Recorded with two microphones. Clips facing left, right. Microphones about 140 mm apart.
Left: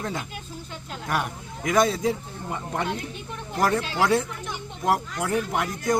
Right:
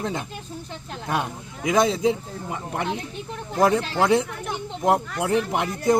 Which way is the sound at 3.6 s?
25° right (ahead or behind).